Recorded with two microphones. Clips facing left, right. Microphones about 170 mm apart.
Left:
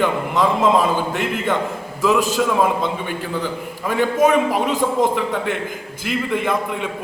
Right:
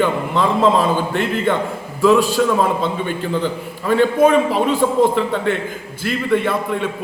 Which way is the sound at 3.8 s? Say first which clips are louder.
Right 3 dB; 10° left (ahead or behind).